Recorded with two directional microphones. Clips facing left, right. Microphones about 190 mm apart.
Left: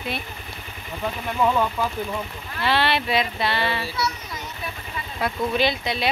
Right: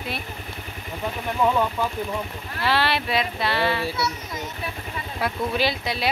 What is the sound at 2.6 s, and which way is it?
Speech, centre (ahead or behind).